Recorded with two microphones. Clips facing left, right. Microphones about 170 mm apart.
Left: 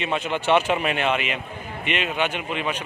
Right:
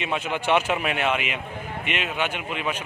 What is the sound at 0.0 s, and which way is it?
A man's voice, 10° right (ahead or behind).